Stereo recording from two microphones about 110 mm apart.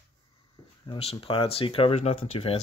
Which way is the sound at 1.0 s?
60° left (ahead or behind).